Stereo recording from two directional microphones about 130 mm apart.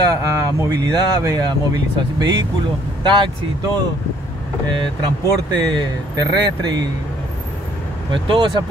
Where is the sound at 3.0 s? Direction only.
35° right (ahead or behind).